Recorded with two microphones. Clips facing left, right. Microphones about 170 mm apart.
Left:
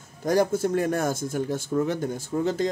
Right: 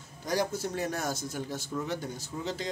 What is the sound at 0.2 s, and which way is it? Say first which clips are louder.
Speech: left 8 dB; 50° left (ahead or behind).